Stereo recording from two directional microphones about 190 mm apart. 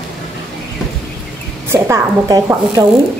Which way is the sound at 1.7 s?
15° right (ahead or behind).